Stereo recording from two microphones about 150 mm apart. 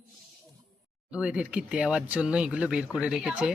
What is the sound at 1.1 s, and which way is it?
Speech, 5° right (ahead or behind).